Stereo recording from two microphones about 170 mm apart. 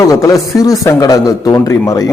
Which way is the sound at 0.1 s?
20° left (ahead or behind).